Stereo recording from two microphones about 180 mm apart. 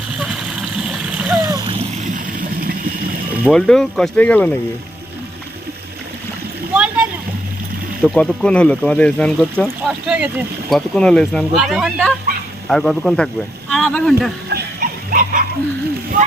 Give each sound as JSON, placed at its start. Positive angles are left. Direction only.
{"t": 0.2, "sound": "a sound", "side_deg": 0}
{"t": 1.5, "sound": "splash", "side_deg": -20}
{"t": 2.1, "sound": "a sound", "side_deg": -55}
{"t": 3.5, "sound": "speech", "side_deg": 5}
{"t": 6.7, "sound": "splash", "side_deg": -5}
{"t": 8.0, "sound": "speech", "side_deg": 5}
{"t": 10.1, "sound": "speech", "side_deg": -5}
{"t": 14.5, "sound": "dog", "side_deg": -50}